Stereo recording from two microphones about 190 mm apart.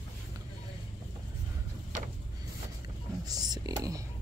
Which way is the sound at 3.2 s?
20° right (ahead or behind).